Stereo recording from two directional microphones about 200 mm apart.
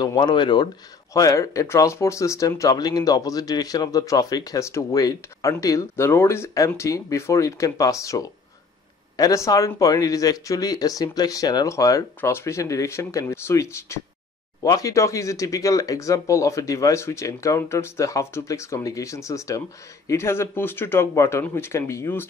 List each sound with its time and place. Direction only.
0.0 s speech: 20° left (ahead or behind)